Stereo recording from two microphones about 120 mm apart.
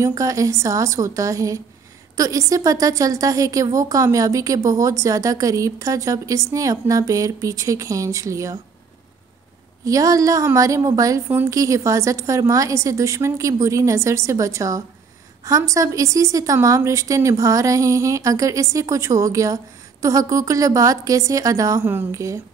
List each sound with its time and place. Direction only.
0.0 s a woman's voice: 25° right (ahead or behind)
9.8 s a woman's voice: 30° right (ahead or behind)